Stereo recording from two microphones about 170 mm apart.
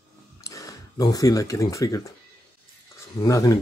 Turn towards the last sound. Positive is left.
turn(degrees=20)  # may be behind; listen again after turning